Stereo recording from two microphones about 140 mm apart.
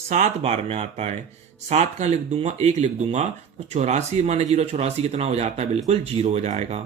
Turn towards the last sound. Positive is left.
turn(degrees=-50)  # may be behind; listen again after turning